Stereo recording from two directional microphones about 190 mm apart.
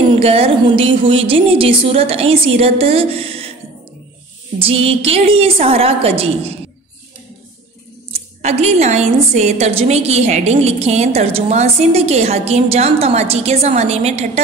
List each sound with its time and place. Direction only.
0.2 s a woman's voice: 30° right (ahead or behind)
4.6 s a woman's voice: 30° right (ahead or behind)
8.1 s a woman's voice: 35° right (ahead or behind)